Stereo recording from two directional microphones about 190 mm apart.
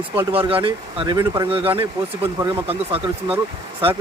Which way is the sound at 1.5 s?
30° right (ahead or behind).